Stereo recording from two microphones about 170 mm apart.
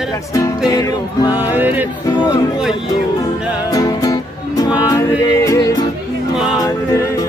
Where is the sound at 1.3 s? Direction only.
10° right (ahead or behind).